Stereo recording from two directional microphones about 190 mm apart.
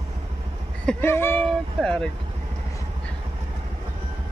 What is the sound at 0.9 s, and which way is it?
Speech, 10° left (ahead or behind).